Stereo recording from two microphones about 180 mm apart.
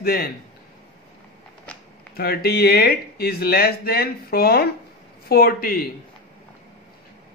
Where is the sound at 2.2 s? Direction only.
60° left (ahead or behind).